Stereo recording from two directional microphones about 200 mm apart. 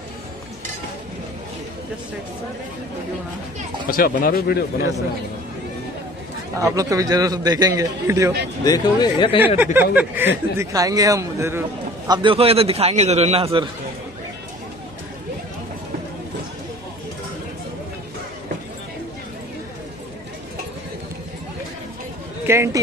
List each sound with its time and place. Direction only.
3.9 s speech: 45° left (ahead or behind)
6.6 s speech: 15° right (ahead or behind)
8.6 s speech: 20° left (ahead or behind)
9.8 s speech: 10° right (ahead or behind)
12.1 s a man's voice: 25° right (ahead or behind)
22.5 s speech: 15° right (ahead or behind)